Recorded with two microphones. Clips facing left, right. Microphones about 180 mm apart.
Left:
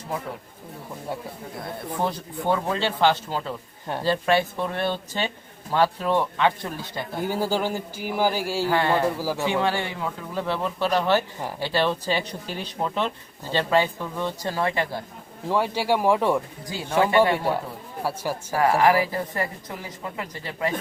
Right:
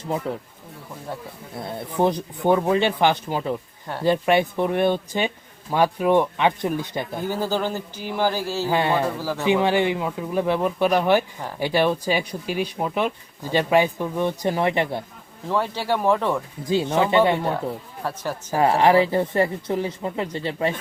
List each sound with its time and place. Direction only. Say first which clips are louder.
2.0 s speech: right 7 dB; 15° right (ahead or behind)
7.3 s a man's voice: even; 10° left (ahead or behind)
8.6 s speech: right 1 dB; 15° right (ahead or behind)
9.1 s a man's voice: even; 10° left (ahead or behind)
9.4 s speech: right 7 dB; 15° right (ahead or behind)
15.4 s a man's voice: left 1 dB; 10° left (ahead or behind)
17.0 s speech: left 1 dB; 20° right (ahead or behind)
17.3 s a man's voice: right 1 dB; 10° left (ahead or behind)
18.5 s speech: right 3 dB; 25° right (ahead or behind)